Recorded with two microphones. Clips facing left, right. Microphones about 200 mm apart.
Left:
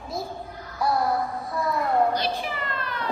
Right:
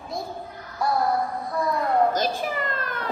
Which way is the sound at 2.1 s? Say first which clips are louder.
Right 2 dB; 45° right (ahead or behind).